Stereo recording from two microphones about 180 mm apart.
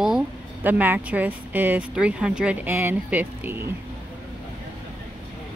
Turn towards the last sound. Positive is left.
turn(degrees=-10)  # may be behind; listen again after turning